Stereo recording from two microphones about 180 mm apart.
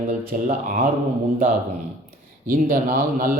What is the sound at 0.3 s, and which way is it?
Speech, 50° right (ahead or behind).